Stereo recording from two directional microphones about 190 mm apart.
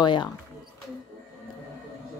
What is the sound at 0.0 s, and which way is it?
Speech, 25° left (ahead or behind).